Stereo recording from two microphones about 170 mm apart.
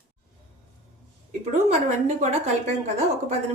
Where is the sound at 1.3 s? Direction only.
40° right (ahead or behind).